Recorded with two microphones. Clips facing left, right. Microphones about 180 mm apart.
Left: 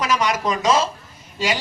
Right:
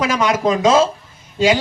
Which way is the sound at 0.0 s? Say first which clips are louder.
Right 4 dB; 55° right (ahead or behind).